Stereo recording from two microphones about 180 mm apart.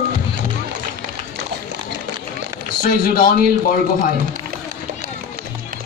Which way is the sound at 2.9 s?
55° left (ahead or behind).